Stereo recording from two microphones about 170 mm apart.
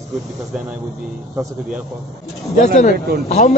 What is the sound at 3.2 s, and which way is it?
Speech, 40° left (ahead or behind).